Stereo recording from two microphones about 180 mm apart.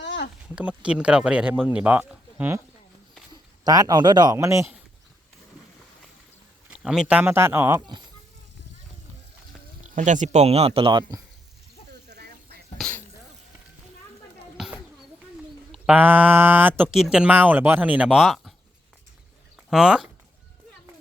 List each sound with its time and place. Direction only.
0.0 s a sound: 75° left (ahead or behind)
0.4 s speech: 5° right (ahead or behind)
3.3 s speech: 20° right (ahead or behind)
6.7 s speech: 5° right (ahead or behind); by 8.0 s 20° right (ahead or behind)
9.9 s speech: 45° right (ahead or behind); by 11.2 s 25° right (ahead or behind)
12.1 s a sound: 60° right (ahead or behind)
12.7 s a sound: 5° left (ahead or behind)
14.6 s children playing: centre (ahead or behind)
15.7 s speech: 10° right (ahead or behind)
19.7 s speech: 5° right (ahead or behind)